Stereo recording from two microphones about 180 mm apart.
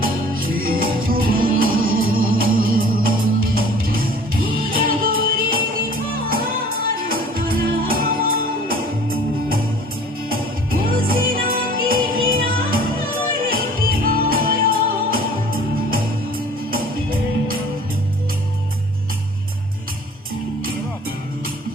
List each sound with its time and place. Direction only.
0.0 s music: 55° right (ahead or behind)
10.8 s music: 55° right (ahead or behind)